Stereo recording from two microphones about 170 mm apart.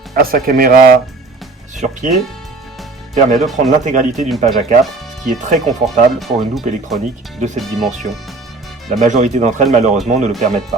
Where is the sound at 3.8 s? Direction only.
50° right (ahead or behind).